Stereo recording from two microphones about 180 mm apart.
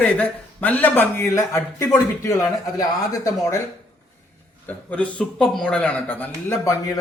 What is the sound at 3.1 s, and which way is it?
Speech, 15° left (ahead or behind).